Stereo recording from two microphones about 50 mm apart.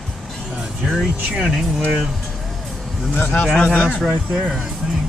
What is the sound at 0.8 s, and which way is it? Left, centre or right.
Speech, centre.